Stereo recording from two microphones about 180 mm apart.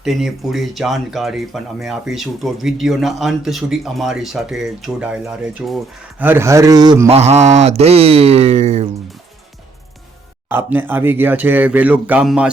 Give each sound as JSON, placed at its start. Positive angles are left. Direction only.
{"t": 0.0, "sound": "speech", "side_deg": 0}
{"t": 6.2, "sound": "speech", "side_deg": -15}
{"t": 7.1, "sound": "a sound", "side_deg": -35}
{"t": 10.5, "sound": "speech", "side_deg": -10}